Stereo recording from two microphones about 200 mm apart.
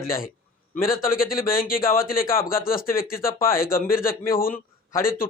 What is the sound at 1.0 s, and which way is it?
Speech, 45° left (ahead or behind).